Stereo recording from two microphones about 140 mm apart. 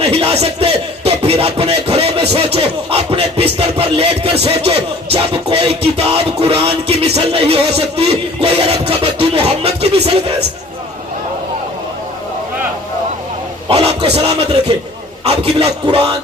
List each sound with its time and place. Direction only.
0.0 s music: 45° right (ahead or behind)
13.7 s a sound: 45° right (ahead or behind)
15.2 s a man's voice: 45° right (ahead or behind)